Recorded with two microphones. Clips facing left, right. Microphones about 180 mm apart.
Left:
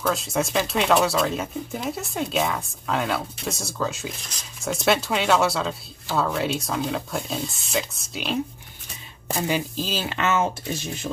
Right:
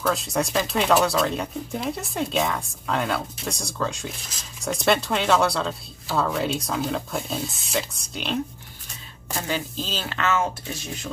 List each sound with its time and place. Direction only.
0.0 s speech: centre (ahead or behind)
9.5 s speech: 10° left (ahead or behind)